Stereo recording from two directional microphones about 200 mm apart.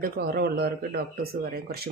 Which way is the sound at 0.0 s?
50° right (ahead or behind).